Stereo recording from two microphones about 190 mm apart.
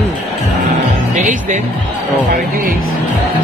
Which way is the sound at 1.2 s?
40° right (ahead or behind).